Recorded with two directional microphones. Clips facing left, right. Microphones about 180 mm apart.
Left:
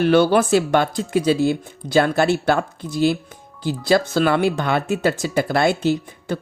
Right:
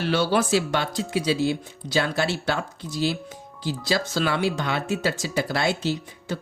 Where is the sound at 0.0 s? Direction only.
55° left (ahead or behind).